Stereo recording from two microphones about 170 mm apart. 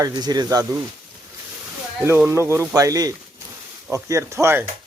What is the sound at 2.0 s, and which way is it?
Speech, 15° right (ahead or behind).